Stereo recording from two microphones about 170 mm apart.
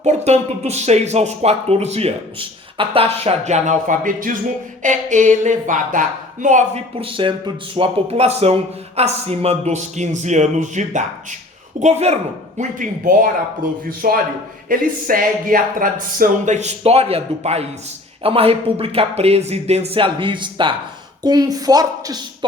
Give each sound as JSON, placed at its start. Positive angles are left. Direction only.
{"t": 0.0, "sound": "speech", "side_deg": -40}
{"t": 6.9, "sound": "speech", "side_deg": -30}
{"t": 12.5, "sound": "a man's voice", "side_deg": -50}